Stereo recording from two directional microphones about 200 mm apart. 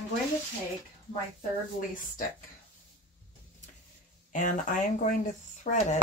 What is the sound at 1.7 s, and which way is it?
Speech, 40° left (ahead or behind).